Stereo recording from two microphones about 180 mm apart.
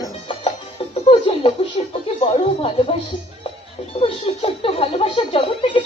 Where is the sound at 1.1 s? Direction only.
35° left (ahead or behind).